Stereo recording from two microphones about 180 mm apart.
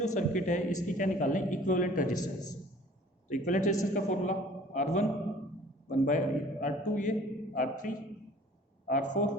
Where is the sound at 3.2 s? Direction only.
45° left (ahead or behind).